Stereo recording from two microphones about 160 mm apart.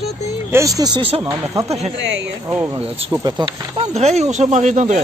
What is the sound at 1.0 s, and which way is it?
Speech, 35° right (ahead or behind).